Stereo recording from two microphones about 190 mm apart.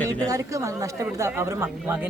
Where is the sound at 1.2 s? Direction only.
15° right (ahead or behind).